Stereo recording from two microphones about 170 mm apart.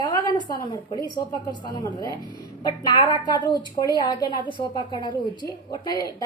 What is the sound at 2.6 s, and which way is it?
A woman's voice, 25° left (ahead or behind).